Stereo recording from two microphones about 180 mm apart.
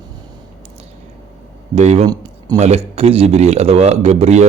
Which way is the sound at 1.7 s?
40° right (ahead or behind).